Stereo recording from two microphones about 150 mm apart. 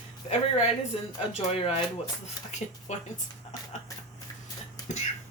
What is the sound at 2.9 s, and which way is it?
Speech, 50° left (ahead or behind).